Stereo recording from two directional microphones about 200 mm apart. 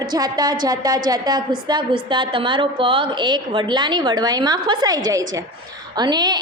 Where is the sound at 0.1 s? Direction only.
20° right (ahead or behind).